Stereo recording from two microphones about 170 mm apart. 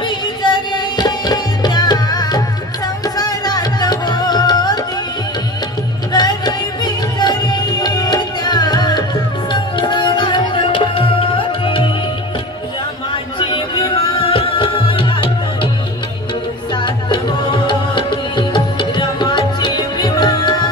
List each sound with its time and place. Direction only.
0.4 s music: 25° left (ahead or behind)
6.1 s music: 25° left (ahead or behind)
9.5 s tabla: 25° left (ahead or behind)
13.1 s music: 30° left (ahead or behind)
16.7 s music: 30° left (ahead or behind)